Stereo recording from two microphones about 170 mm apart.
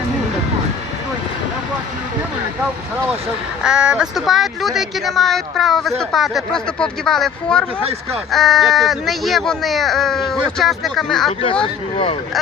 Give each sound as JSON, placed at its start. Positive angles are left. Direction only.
{"t": 3.6, "sound": "speech", "side_deg": -5}
{"t": 11.6, "sound": "speech", "side_deg": 35}